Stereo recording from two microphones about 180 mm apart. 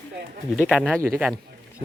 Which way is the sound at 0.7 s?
5° right (ahead or behind).